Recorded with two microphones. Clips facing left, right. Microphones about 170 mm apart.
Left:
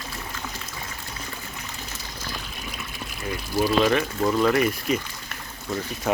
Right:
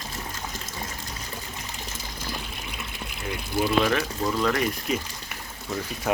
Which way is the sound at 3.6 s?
5° left (ahead or behind).